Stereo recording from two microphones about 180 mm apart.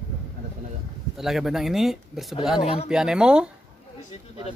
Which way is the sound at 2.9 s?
5° right (ahead or behind).